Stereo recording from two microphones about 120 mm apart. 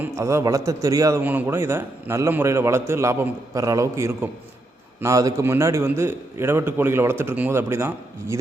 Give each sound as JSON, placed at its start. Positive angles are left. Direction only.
{"t": 0.0, "sound": "a man's voice", "side_deg": -25}
{"t": 1.2, "sound": "a man's voice", "side_deg": -15}